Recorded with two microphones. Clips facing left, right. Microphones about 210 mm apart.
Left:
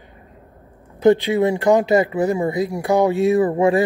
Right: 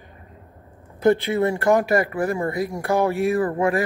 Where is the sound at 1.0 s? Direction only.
15° left (ahead or behind).